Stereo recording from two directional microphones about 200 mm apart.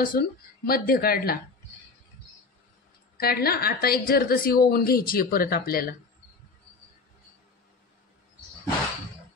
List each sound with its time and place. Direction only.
0.0 s a woman's voice: 45° left (ahead or behind)
3.2 s a woman's voice: 50° left (ahead or behind)